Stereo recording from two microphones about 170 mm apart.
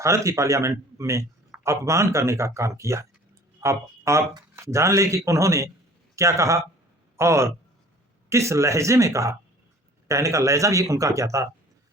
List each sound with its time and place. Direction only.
0.0 s speech: 15° right (ahead or behind)